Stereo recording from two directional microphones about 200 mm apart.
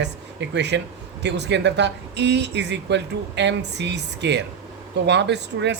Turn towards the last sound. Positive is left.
turn(degrees=-60)  # may be behind; listen again after turning